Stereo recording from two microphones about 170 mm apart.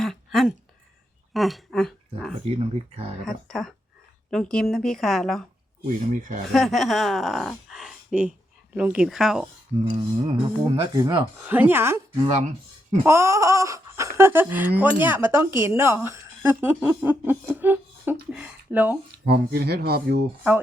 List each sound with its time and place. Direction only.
0.0 s a sound: centre (ahead or behind)
1.3 s speech: centre (ahead or behind)
2.4 s speech: 35° right (ahead or behind)
3.2 s a woman's voice: centre (ahead or behind)
5.8 s speech: 45° right (ahead or behind)
6.5 s a woman's voice: centre (ahead or behind)
9.9 s speech: 35° right (ahead or behind)
10.9 s speech: 20° right (ahead or behind)
12.3 s speech: 45° right (ahead or behind)
13.1 s speech: 15° right (ahead or behind)
19.2 s speech: 70° right (ahead or behind)